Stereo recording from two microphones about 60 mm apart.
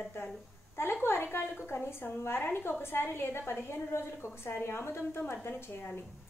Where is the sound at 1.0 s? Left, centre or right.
Left.